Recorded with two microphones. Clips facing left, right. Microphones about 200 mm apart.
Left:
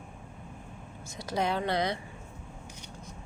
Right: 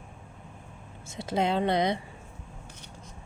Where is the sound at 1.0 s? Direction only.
25° right (ahead or behind).